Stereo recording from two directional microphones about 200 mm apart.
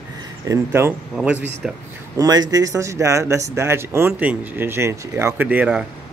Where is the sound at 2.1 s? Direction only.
20° right (ahead or behind).